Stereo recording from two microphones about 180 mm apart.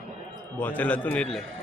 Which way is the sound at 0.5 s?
10° left (ahead or behind).